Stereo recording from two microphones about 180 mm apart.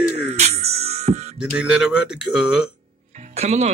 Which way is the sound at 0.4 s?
35° right (ahead or behind).